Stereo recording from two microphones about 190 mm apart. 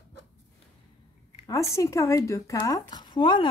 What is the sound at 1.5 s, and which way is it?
A woman's voice, 15° left (ahead or behind).